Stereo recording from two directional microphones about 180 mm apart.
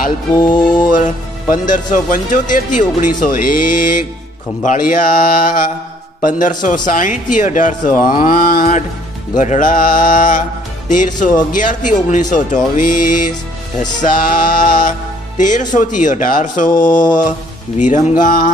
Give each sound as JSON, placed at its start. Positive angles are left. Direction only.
{"t": 0.4, "sound": "music", "side_deg": 25}
{"t": 0.9, "sound": "speech", "side_deg": 45}